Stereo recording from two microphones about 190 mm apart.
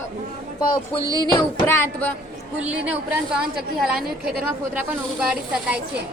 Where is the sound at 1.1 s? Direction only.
20° left (ahead or behind).